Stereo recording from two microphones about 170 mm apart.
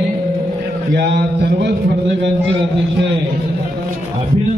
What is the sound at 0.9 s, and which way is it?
Speech, 85° right.